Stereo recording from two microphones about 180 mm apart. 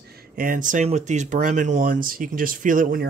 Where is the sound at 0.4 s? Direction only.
50° right (ahead or behind).